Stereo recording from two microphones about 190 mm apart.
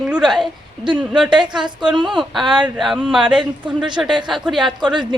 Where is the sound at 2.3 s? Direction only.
Centre (ahead or behind).